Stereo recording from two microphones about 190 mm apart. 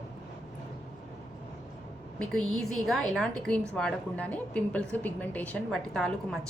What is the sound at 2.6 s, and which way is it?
A woman's voice, centre (ahead or behind).